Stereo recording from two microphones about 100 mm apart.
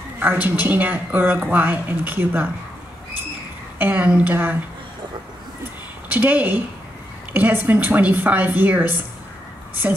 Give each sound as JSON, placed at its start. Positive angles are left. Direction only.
{"t": 0.2, "sound": "speech", "side_deg": -15}
{"t": 3.7, "sound": "a woman's voice", "side_deg": -15}
{"t": 6.0, "sound": "a woman's voice", "side_deg": -15}